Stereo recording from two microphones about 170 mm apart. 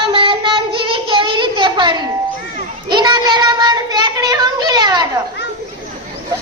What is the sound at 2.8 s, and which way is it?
Child singing, 25° right (ahead or behind).